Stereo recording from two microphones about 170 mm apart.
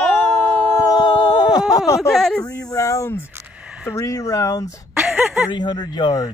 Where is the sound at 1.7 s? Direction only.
20° left (ahead or behind).